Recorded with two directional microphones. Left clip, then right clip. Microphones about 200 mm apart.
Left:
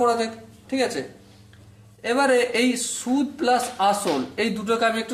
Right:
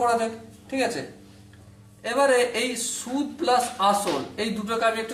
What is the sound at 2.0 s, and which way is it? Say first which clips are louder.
A man's voice: left 1 dB; 50° left (ahead or behind).